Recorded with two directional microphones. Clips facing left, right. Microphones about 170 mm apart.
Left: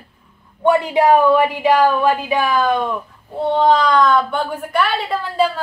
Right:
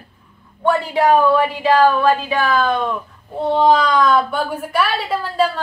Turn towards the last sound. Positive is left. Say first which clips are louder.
# even
turn(degrees=0)  # may be behind; listen again after turning